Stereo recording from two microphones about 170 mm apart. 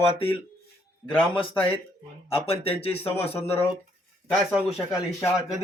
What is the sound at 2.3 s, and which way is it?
Speech, 35° left (ahead or behind).